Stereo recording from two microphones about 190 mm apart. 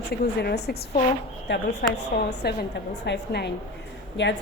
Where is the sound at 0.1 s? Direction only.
60° left (ahead or behind).